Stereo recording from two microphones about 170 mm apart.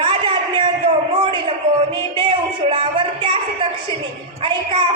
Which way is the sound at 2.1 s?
25° right (ahead or behind).